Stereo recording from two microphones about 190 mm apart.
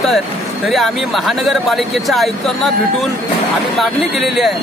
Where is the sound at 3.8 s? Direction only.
Centre (ahead or behind).